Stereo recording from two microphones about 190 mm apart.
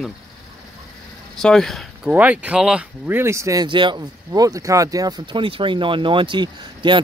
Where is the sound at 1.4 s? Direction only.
5° left (ahead or behind).